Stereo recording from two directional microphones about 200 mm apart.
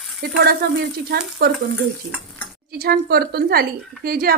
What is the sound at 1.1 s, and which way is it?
Speech, 50° right (ahead or behind).